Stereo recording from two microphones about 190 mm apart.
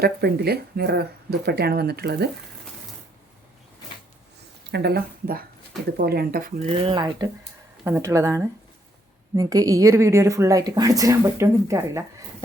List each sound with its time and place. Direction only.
0.0 s speech: 55° right (ahead or behind)
4.7 s a woman's voice: 60° right (ahead or behind)
6.6 s speech: 35° right (ahead or behind)
6.9 s a woman's voice: 20° right (ahead or behind)